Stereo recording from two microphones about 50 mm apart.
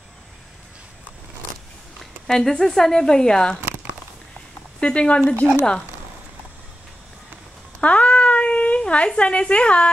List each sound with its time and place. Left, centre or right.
2.2 s a woman's voice: centre
4.7 s speech: left
5.4 s a woman's voice: centre
7.8 s a sound: left